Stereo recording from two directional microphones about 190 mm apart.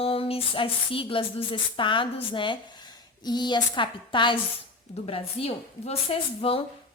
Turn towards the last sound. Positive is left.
turn(degrees=30)  # may be behind; listen again after turning